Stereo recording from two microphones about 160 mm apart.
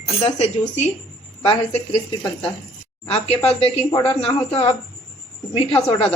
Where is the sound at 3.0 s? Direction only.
40° left (ahead or behind).